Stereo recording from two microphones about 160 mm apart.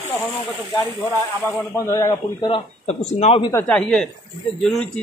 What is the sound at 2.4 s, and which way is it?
Speech, 35° left (ahead or behind).